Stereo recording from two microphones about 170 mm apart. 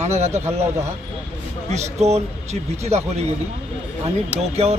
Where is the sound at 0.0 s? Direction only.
40° right (ahead or behind).